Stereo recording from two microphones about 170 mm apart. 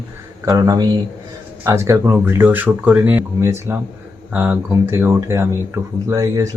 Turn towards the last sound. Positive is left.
turn(degrees=-20)  # may be behind; listen again after turning